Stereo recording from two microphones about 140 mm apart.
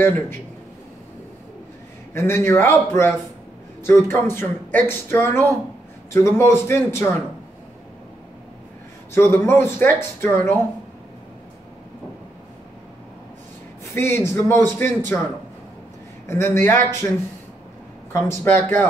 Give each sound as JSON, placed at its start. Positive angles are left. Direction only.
{"t": 2.1, "sound": "a man's voice", "side_deg": 15}
{"t": 9.1, "sound": "speech", "side_deg": 15}
{"t": 13.9, "sound": "speech", "side_deg": 20}
{"t": 16.3, "sound": "speech", "side_deg": 15}
{"t": 18.1, "sound": "speech", "side_deg": 15}